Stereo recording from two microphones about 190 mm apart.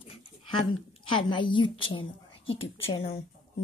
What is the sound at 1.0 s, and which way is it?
A woman's voice, 25° left (ahead or behind).